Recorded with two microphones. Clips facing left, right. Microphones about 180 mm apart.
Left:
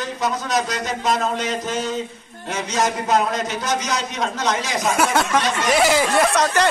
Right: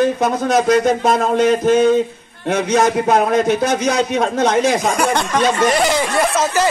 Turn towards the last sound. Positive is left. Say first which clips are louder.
# right 1 dB
turn(degrees=0)  # may be behind; listen again after turning